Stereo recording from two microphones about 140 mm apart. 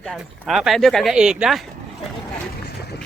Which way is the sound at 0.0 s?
5° left (ahead or behind).